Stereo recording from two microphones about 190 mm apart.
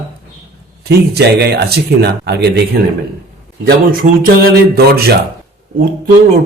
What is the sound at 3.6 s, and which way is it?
Speech, 50° right (ahead or behind).